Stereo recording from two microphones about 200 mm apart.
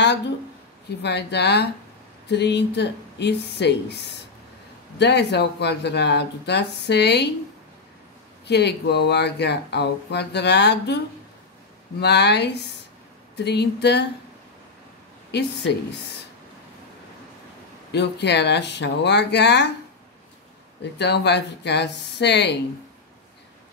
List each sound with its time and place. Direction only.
1.0 s speech: 55° left (ahead or behind)
8.5 s speech: 55° left (ahead or behind)
12.0 s speech: 55° left (ahead or behind)
17.9 s speech: 60° left (ahead or behind)
21.0 s speech: 55° left (ahead or behind)